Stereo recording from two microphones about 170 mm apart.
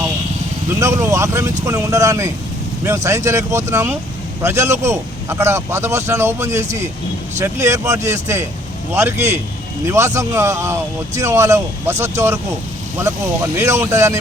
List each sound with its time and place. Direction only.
0.8 s speech: 15° right (ahead or behind)